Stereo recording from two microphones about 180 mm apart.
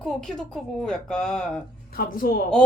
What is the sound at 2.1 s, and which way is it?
Speech, 55° left (ahead or behind).